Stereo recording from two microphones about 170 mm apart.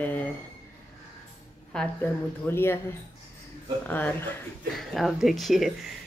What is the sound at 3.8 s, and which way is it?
Speech, 10° left (ahead or behind).